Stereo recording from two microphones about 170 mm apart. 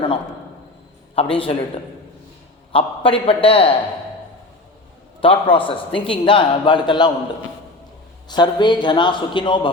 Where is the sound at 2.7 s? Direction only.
30° left (ahead or behind).